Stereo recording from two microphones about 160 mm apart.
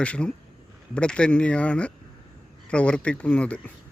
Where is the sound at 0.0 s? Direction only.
5° left (ahead or behind).